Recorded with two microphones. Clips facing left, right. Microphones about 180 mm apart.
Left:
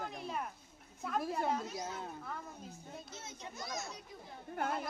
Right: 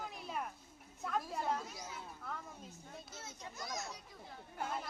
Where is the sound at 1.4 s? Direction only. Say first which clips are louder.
Left 4 dB; 65° left (ahead or behind).